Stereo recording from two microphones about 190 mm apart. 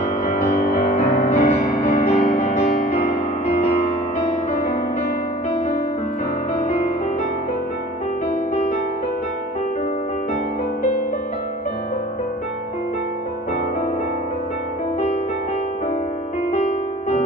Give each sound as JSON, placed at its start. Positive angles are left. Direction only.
{"t": 0.2, "sound": "music", "side_deg": 40}